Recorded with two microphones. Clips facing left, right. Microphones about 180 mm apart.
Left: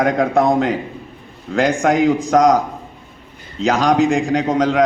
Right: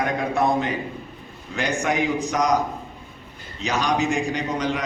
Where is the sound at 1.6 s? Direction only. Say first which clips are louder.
Left 8 dB; 90° left.